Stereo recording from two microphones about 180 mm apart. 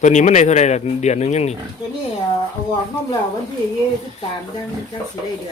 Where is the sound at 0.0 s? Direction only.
40° left (ahead or behind).